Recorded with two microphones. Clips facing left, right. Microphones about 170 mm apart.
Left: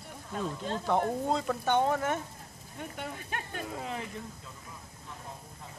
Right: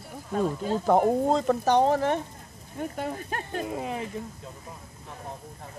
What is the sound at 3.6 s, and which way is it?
Speech, 20° right (ahead or behind).